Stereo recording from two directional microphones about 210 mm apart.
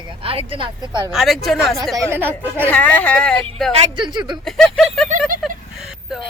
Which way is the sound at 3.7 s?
20° right (ahead or behind).